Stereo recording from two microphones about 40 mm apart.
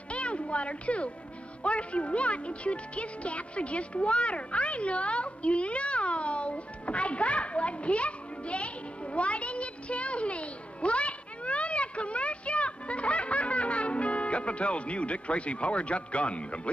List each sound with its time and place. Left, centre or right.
0.1 s music: left